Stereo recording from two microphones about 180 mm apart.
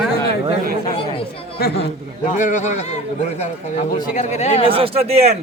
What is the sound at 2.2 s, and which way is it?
A man's voice, 45° left (ahead or behind).